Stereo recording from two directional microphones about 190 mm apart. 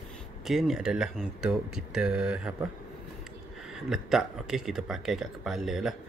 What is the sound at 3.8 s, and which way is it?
Speech, centre (ahead or behind).